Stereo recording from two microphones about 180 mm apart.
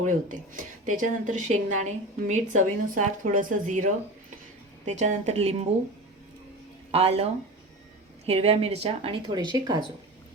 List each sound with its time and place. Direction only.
0.0 s speech: 45° right (ahead or behind)
4.9 s speech: 40° right (ahead or behind)
6.9 s speech: 35° right (ahead or behind)
8.3 s speech: 35° right (ahead or behind)